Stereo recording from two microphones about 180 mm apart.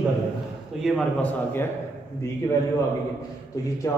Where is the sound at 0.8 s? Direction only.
5° left (ahead or behind).